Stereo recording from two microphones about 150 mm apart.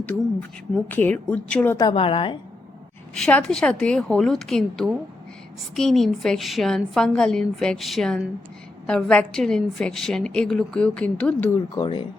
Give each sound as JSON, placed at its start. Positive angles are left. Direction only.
{"t": 0.0, "sound": "a woman's voice", "side_deg": 5}
{"t": 1.9, "sound": "a woman's voice", "side_deg": 35}
{"t": 3.2, "sound": "a woman's voice", "side_deg": 5}
{"t": 11.8, "sound": "a woman's voice", "side_deg": 35}